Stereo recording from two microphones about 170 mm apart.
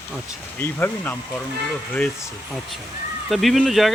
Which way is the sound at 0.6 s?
10° left (ahead or behind).